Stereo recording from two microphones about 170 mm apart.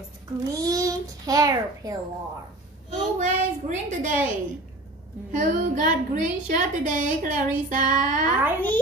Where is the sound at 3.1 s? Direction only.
45° right (ahead or behind).